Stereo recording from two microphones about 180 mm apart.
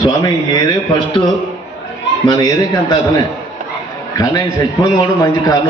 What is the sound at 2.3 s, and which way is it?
A man's voice, 20° left (ahead or behind).